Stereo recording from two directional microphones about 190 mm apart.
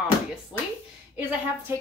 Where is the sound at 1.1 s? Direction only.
10° right (ahead or behind).